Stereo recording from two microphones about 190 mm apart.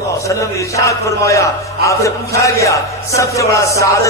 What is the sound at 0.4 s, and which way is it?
A man's voice, 15° left (ahead or behind).